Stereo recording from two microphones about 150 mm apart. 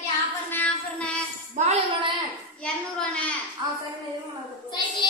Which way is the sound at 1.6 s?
55° right (ahead or behind).